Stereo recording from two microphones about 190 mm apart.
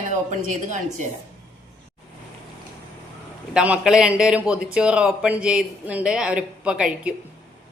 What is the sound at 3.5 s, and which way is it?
A woman's voice, 5° right (ahead or behind).